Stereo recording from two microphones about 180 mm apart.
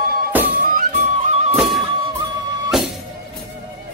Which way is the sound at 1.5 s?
Centre (ahead or behind).